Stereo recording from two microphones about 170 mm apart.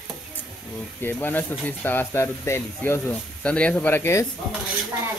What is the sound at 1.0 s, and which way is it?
Speech, 10° left (ahead or behind).